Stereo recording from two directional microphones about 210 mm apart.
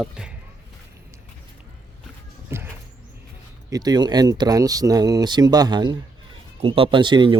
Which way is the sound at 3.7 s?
20° right (ahead or behind).